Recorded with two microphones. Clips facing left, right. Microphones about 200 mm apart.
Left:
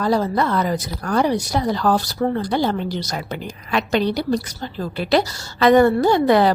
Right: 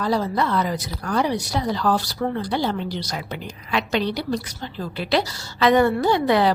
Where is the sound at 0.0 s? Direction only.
45° left (ahead or behind).